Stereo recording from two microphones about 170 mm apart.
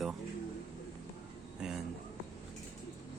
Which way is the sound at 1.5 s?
5° right (ahead or behind).